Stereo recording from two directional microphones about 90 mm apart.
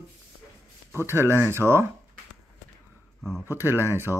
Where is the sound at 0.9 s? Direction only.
25° right (ahead or behind).